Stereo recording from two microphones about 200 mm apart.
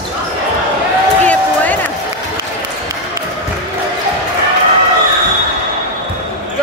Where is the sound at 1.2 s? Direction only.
10° left (ahead or behind).